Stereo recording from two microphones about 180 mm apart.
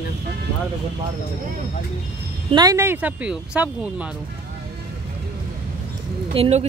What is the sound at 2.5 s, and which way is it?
Speech, 20° right (ahead or behind).